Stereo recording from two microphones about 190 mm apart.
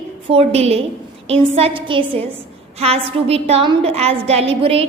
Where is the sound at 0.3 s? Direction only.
30° right (ahead or behind).